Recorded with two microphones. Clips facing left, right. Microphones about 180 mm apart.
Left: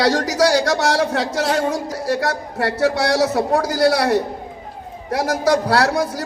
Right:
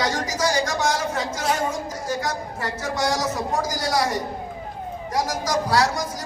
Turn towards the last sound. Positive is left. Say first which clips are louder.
# left 4 dB
turn(degrees=65)  # may be behind; listen again after turning